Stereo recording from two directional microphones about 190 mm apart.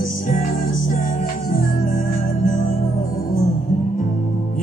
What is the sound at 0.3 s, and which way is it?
Music, 45° left (ahead or behind).